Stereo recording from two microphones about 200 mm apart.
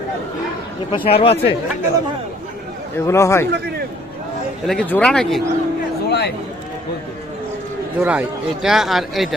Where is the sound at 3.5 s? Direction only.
55° right (ahead or behind).